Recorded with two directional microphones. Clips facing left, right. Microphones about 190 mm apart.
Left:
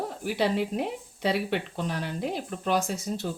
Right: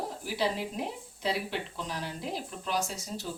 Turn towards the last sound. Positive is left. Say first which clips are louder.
# left 5 dB
turn(degrees=55)  # may be behind; listen again after turning